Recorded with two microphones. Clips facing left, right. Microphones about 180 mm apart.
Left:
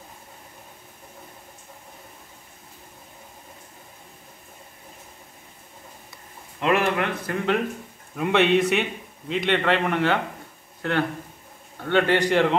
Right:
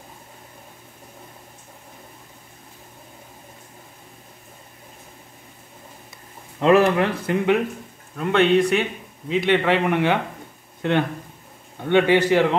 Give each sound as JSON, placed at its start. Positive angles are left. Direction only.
{"t": 6.6, "sound": "speech", "side_deg": -30}
{"t": 8.2, "sound": "a man's voice", "side_deg": 5}